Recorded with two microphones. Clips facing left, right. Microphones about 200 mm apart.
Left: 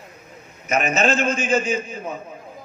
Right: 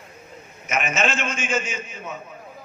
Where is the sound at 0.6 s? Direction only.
35° left (ahead or behind).